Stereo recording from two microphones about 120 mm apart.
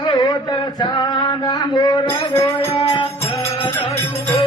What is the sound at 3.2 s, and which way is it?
Music, 25° left (ahead or behind).